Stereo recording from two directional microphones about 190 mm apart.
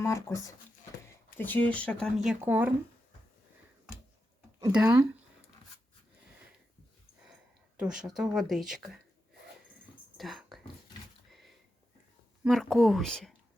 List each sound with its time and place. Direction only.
0.0 s speech: 15° left (ahead or behind)
2.4 s speech: 10° right (ahead or behind)
4.6 s speech: 5° right (ahead or behind)
7.8 s speech: 5° right (ahead or behind)
10.2 s a sound: centre (ahead or behind)
11.3 s sniff: centre (ahead or behind)
12.5 s speech: centre (ahead or behind)